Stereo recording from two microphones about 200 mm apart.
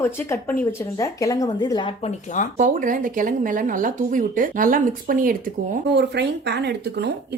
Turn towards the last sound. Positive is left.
turn(degrees=-55)  # may be behind; listen again after turning